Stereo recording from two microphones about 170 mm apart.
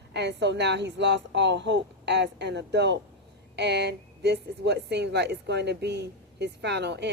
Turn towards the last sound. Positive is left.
turn(degrees=-85)